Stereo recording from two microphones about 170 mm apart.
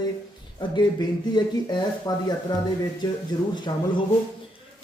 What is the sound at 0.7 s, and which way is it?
Speech, 25° left (ahead or behind).